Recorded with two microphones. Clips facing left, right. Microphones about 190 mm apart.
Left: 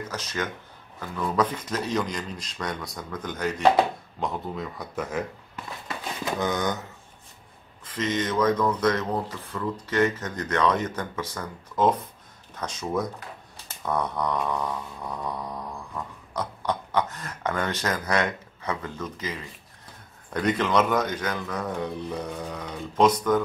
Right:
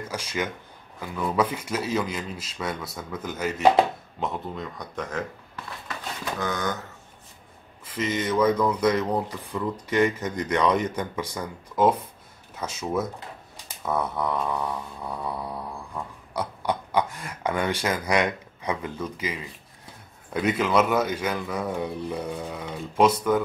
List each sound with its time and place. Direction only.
0.1 s speech: 10° right (ahead or behind); by 5.2 s 10° left (ahead or behind)
6.3 s speech: 20° left (ahead or behind)
7.8 s speech: 10° right (ahead or behind)
13.8 s a sound: 5° right (ahead or behind)
20.3 s speech: 5° right (ahead or behind)